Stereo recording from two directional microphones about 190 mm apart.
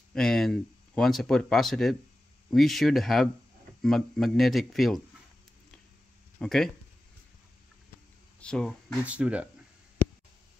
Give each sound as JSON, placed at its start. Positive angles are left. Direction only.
{"t": 0.1, "sound": "speech", "side_deg": 0}
{"t": 6.4, "sound": "speech", "side_deg": 0}
{"t": 8.4, "sound": "speech", "side_deg": 5}
{"t": 9.0, "sound": "speech", "side_deg": -5}